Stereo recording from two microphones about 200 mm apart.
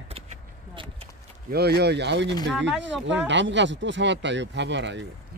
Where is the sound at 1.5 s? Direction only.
55° right (ahead or behind).